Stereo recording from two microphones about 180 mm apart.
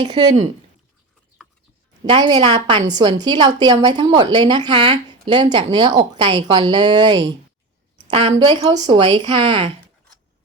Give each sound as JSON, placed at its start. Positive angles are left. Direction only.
{"t": 0.0, "sound": "speech", "side_deg": -25}
{"t": 2.0, "sound": "speech", "side_deg": -25}
{"t": 8.0, "sound": "a sound", "side_deg": -30}
{"t": 8.3, "sound": "speech", "side_deg": -20}